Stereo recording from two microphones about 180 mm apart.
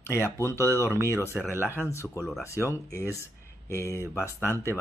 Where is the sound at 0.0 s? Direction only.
15° left (ahead or behind).